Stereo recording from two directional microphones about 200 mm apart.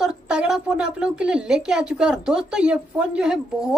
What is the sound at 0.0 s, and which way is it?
A woman's voice, 5° right (ahead or behind).